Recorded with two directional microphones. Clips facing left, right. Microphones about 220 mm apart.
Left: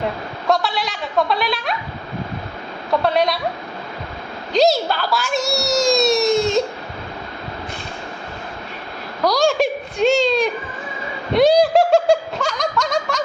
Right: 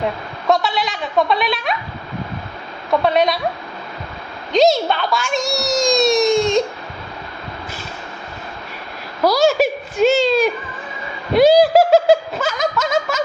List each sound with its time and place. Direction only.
0.4 s a child's voice: centre (ahead or behind)
3.0 s a child's voice: centre (ahead or behind)
4.5 s a child's voice: centre (ahead or behind)
9.2 s a child's voice: 5° right (ahead or behind)